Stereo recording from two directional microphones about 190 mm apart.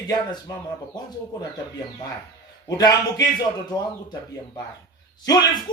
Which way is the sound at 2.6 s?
20° left (ahead or behind).